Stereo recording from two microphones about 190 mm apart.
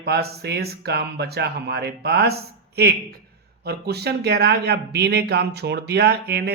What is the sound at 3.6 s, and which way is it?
A man's voice, 60° right (ahead or behind).